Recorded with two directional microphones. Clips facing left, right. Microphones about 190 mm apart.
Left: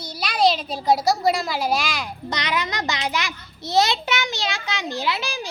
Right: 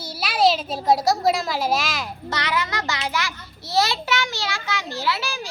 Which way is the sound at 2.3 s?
20° left (ahead or behind).